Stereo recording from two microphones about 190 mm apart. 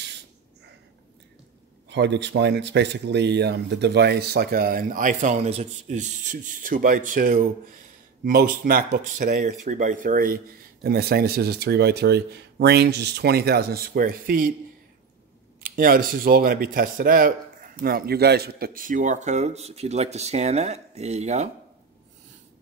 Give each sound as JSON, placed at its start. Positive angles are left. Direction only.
{"t": 1.9, "sound": "speech", "side_deg": -65}
{"t": 15.6, "sound": "speech", "side_deg": -50}